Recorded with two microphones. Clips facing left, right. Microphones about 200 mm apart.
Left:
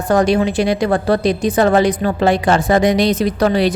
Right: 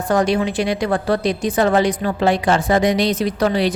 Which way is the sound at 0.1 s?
40° left (ahead or behind).